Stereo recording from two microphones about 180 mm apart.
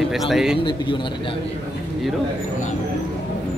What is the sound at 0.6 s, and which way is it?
Speech, 30° left (ahead or behind).